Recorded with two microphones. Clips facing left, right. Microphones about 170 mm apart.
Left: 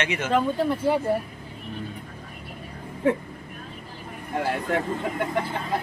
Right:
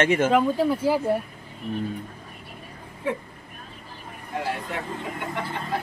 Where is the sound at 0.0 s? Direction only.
50° right (ahead or behind).